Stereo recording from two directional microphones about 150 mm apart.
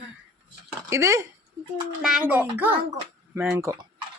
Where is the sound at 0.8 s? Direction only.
20° right (ahead or behind).